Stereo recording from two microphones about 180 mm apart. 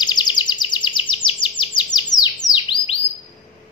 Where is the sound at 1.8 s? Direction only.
25° left (ahead or behind).